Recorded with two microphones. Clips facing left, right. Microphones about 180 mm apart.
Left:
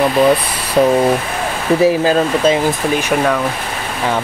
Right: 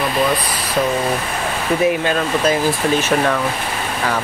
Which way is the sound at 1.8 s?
30° left (ahead or behind).